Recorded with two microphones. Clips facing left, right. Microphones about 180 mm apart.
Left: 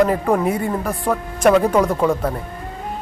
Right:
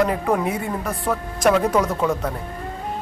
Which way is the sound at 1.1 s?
10° left (ahead or behind).